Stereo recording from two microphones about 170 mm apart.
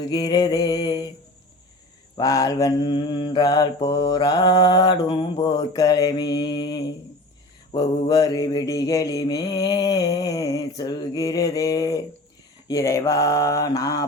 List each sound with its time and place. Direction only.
0.1 s mantra: 25° left (ahead or behind)
2.1 s mantra: 20° left (ahead or behind)